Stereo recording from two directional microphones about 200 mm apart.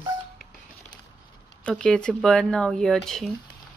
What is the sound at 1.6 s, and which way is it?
Speech, 5° left (ahead or behind).